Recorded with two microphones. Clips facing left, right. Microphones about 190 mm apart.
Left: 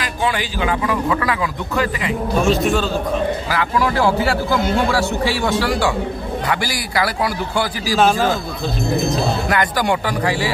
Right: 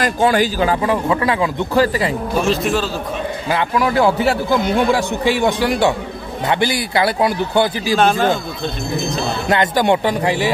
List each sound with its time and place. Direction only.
0.0 s speech: 45° right (ahead or behind)
2.3 s a man's voice: centre (ahead or behind)
3.4 s a man's voice: 20° right (ahead or behind)
7.9 s a man's voice: centre (ahead or behind)
9.5 s a man's voice: 25° right (ahead or behind)